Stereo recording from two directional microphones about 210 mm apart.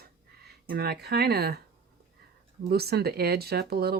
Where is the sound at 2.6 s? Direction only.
50° right (ahead or behind).